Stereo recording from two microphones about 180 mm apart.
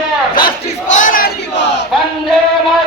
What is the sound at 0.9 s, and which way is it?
Battle cry, 45° left (ahead or behind).